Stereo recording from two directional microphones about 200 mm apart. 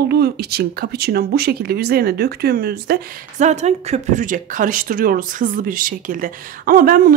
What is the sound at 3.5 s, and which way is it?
Speech, 35° right (ahead or behind).